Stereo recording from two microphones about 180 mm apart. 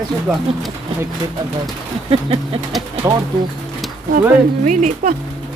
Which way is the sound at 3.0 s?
10° right (ahead or behind).